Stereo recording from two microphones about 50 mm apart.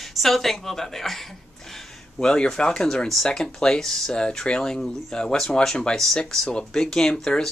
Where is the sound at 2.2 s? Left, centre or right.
Centre.